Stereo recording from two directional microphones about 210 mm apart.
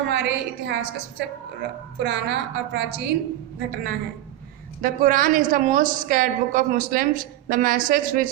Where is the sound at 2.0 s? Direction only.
55° right (ahead or behind).